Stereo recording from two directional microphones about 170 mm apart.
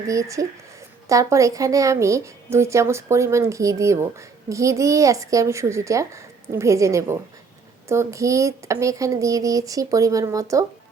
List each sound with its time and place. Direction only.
0.1 s a woman's voice: 20° right (ahead or behind)